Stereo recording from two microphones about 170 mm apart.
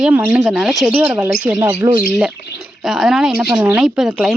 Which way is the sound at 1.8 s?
20° right (ahead or behind).